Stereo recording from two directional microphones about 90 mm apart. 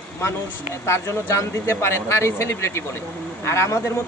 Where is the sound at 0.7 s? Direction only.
30° left (ahead or behind).